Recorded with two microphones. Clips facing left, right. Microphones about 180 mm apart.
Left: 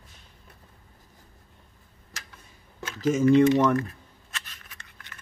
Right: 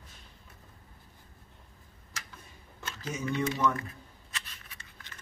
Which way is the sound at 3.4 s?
85° left.